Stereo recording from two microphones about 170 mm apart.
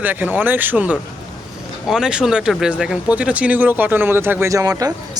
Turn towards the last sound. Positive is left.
turn(degrees=-20)  # may be behind; listen again after turning